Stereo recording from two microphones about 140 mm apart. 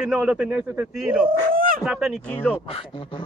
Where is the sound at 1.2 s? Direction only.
85° right.